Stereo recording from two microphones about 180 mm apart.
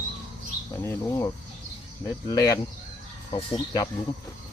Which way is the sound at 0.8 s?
15° left (ahead or behind).